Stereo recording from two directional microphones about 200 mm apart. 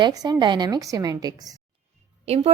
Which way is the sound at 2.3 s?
30° right (ahead or behind).